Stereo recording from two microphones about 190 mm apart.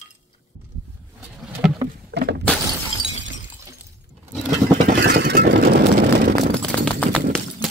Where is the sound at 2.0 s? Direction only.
60° right (ahead or behind).